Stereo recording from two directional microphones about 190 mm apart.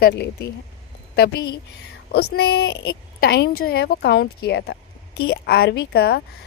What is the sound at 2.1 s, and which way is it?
A woman's voice, 60° left (ahead or behind).